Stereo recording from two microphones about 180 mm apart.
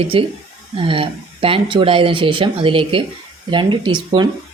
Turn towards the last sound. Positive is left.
turn(degrees=-25)  # may be behind; listen again after turning